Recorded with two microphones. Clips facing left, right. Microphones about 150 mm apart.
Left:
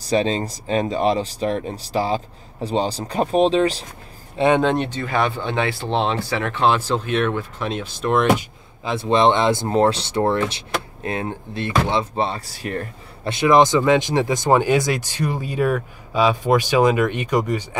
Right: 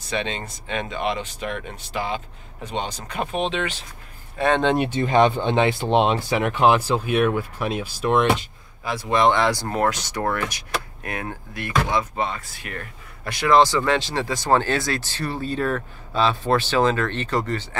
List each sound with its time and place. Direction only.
0.0 s speech: 35° left (ahead or behind)
4.4 s speech: 25° left (ahead or behind)
5.0 s speech: 20° right (ahead or behind); by 8.3 s 5° right (ahead or behind)
8.8 s speech: 25° left (ahead or behind)